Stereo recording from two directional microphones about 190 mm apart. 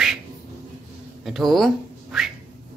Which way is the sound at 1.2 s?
Centre (ahead or behind).